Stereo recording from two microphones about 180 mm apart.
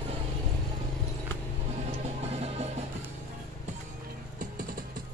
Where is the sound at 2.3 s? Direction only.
35° right (ahead or behind).